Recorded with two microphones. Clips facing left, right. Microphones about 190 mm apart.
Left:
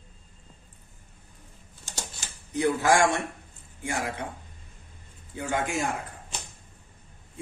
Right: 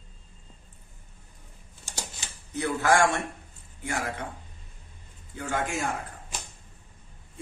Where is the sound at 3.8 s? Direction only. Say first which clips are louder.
Left 1 dB; 20° left (ahead or behind).